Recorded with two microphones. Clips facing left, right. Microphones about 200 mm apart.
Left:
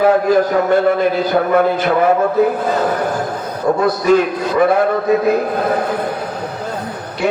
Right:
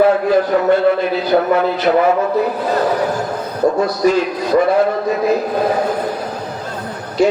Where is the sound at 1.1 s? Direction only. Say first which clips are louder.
Even; 50° left (ahead or behind).